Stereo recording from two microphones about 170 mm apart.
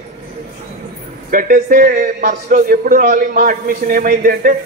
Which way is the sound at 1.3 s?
60° right (ahead or behind).